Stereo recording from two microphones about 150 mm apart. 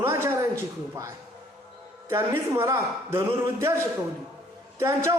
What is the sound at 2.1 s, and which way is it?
A man's voice, 15° right (ahead or behind).